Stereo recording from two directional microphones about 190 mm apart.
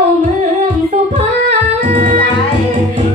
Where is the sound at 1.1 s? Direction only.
40° right (ahead or behind).